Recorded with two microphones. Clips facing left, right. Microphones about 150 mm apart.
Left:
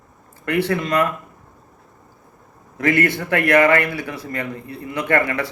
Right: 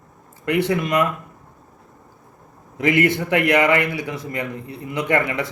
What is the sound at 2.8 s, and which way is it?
A man's voice, 20° right (ahead or behind).